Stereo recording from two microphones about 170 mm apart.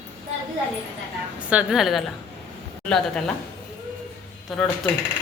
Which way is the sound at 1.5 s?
5° right (ahead or behind).